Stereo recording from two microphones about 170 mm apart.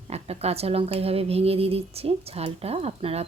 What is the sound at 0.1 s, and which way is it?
Speech, 35° right (ahead or behind).